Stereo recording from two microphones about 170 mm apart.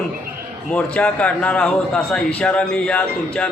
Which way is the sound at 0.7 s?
5° left (ahead or behind).